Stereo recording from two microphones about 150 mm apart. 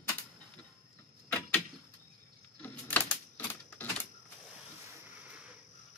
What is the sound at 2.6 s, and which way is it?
Typewriter, 10° left (ahead or behind).